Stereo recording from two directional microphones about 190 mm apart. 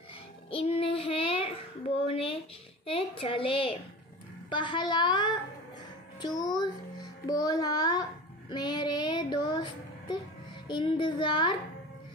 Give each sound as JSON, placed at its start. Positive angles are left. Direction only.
{"t": 0.5, "sound": "child singing", "side_deg": 30}
{"t": 2.0, "sound": "a sound", "side_deg": 30}
{"t": 4.5, "sound": "a woman's voice", "side_deg": 25}
{"t": 8.5, "sound": "child singing", "side_deg": 25}
{"t": 10.7, "sound": "speech", "side_deg": 25}